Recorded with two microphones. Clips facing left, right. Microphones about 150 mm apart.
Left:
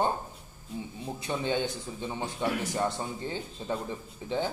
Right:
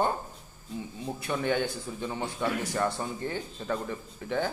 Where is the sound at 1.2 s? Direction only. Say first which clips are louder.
Right 1 dB; 20° left (ahead or behind).